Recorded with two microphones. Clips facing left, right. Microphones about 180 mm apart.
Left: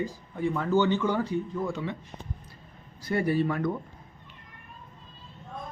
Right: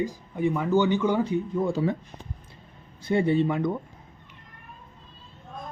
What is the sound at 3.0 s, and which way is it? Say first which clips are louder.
Speech: right 3 dB; 25° right (ahead or behind).